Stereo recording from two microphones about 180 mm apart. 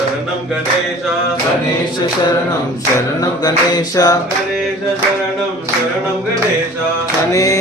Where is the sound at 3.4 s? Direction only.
20° left (ahead or behind).